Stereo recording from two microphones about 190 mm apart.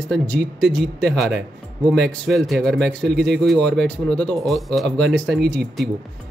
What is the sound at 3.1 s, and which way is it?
Speech, 65° right (ahead or behind).